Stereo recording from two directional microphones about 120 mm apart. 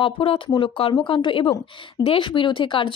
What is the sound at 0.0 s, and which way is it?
A woman's voice, 50° left (ahead or behind).